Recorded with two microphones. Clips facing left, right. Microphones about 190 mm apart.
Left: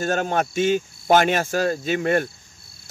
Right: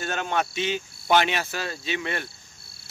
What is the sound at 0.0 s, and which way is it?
Speech, 40° left (ahead or behind).